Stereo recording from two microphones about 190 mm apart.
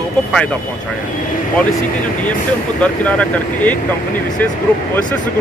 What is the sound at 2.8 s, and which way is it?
Speech, 5° left (ahead or behind).